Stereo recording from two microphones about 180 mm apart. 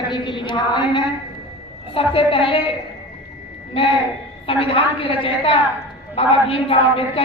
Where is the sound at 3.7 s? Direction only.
30° left (ahead or behind).